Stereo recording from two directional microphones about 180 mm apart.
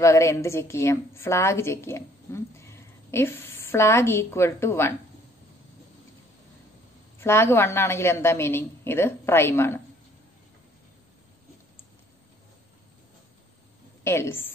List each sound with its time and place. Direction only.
0.0 s a woman's voice: 15° left (ahead or behind)
7.2 s a woman's voice: 15° left (ahead or behind)
14.0 s a woman's voice: 15° left (ahead or behind)